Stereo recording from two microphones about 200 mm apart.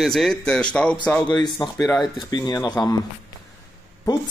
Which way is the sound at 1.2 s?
20° left (ahead or behind).